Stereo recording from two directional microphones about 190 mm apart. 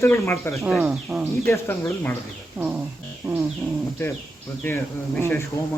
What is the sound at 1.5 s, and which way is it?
Speech, 15° left (ahead or behind).